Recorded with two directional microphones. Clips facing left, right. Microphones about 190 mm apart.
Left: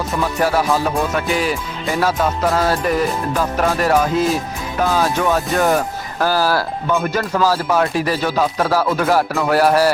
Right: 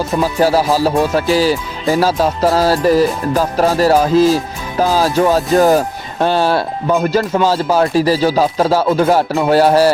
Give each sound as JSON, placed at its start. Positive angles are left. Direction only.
{"t": 0.2, "sound": "music", "side_deg": -30}
{"t": 6.9, "sound": "speech", "side_deg": -30}